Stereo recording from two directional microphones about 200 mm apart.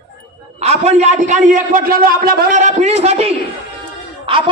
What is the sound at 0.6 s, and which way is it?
A man's voice, 30° right (ahead or behind).